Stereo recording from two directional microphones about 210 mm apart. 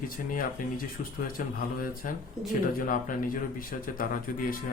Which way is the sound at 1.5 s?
40° left (ahead or behind).